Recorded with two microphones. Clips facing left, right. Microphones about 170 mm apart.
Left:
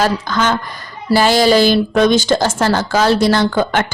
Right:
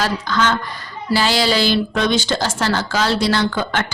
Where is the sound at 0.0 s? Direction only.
45° left (ahead or behind).